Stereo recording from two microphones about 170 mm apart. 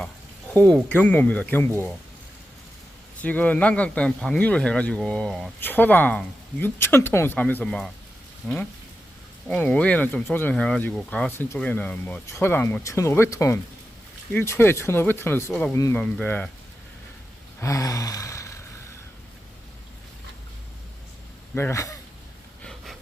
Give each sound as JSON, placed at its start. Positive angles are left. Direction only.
{"t": 0.5, "sound": "speech", "side_deg": 10}
{"t": 3.2, "sound": "speech", "side_deg": 10}
{"t": 17.6, "sound": "gasp", "side_deg": 20}
{"t": 21.5, "sound": "speech", "side_deg": 15}
{"t": 22.6, "sound": "a sound", "side_deg": 0}